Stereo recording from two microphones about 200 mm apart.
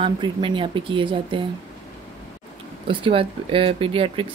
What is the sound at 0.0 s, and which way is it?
Speech, 25° right (ahead or behind).